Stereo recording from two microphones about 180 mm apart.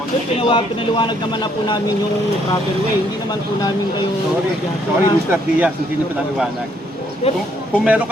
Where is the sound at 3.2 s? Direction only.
25° left (ahead or behind).